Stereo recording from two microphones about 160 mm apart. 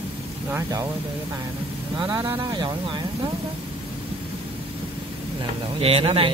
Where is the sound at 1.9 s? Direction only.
25° right (ahead or behind).